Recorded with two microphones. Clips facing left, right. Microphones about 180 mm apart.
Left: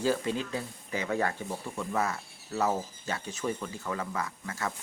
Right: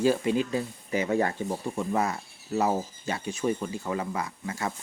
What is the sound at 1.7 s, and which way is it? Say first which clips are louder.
Speech: right 6 dB; 35° right (ahead or behind).